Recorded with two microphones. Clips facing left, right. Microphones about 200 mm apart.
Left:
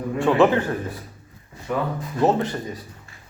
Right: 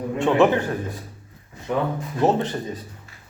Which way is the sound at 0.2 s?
15° right (ahead or behind).